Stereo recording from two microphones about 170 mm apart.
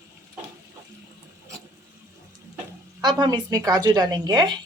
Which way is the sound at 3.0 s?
25° right (ahead or behind).